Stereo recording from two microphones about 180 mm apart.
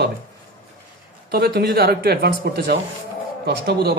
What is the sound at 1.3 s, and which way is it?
Speech, 60° right (ahead or behind).